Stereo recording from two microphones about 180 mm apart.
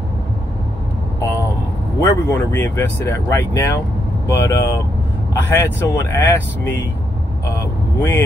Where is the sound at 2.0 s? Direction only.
10° left (ahead or behind).